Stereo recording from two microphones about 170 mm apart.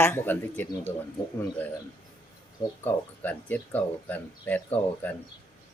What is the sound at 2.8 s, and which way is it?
Speech, 10° left (ahead or behind).